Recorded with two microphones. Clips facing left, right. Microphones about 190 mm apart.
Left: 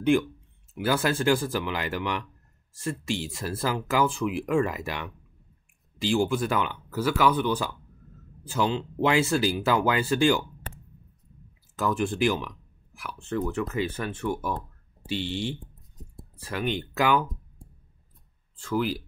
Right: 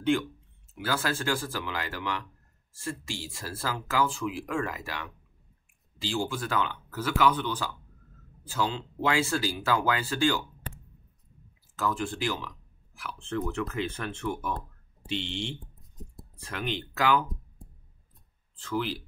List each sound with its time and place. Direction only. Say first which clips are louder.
0.8 s speech: left 6 dB; 15° left (ahead or behind)
11.8 s speech: left 5 dB; 15° left (ahead or behind)